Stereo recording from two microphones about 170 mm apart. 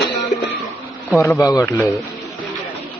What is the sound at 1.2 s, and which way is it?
Speech, 20° left (ahead or behind).